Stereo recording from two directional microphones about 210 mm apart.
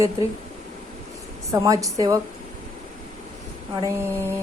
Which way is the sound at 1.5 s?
15° right (ahead or behind).